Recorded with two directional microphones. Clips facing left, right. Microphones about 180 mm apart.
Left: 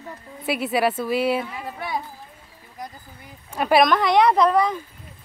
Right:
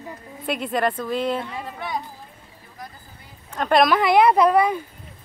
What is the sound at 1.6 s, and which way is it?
Music, 10° left (ahead or behind).